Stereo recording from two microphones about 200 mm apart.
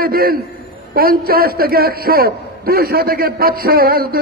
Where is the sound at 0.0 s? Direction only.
45° right (ahead or behind).